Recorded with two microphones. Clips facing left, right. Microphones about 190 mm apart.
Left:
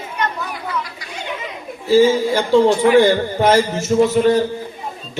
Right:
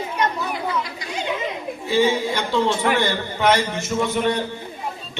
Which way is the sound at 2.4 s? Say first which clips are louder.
Left 8 dB; 45° left (ahead or behind).